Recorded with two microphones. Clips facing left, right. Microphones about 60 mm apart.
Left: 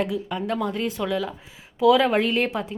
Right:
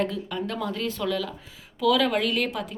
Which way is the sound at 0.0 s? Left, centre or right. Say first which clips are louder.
Left 2 dB; centre.